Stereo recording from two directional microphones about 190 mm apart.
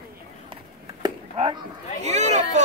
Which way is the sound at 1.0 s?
30° right (ahead or behind).